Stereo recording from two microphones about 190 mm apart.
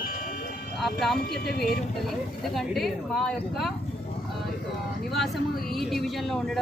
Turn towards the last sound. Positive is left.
turn(degrees=0)  # may be behind; listen again after turning